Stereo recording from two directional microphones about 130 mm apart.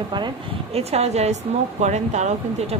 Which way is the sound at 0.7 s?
55° right (ahead or behind).